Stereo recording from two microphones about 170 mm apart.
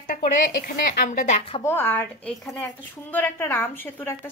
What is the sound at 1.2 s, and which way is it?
Speech, 40° left (ahead or behind).